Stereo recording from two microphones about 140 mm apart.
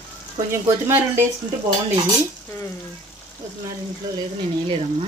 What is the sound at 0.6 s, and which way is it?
Speech, 20° right (ahead or behind).